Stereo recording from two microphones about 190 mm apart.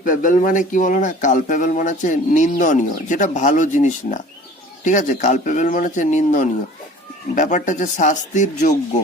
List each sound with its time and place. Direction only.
0.0 s speech: 45° left (ahead or behind)